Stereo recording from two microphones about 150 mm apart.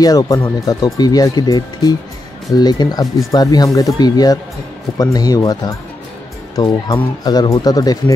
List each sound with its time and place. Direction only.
0.0 s speech: 25° left (ahead or behind)